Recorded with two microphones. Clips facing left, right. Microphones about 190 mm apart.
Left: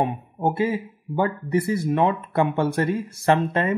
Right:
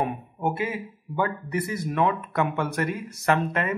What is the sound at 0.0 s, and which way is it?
Speech, 30° left (ahead or behind).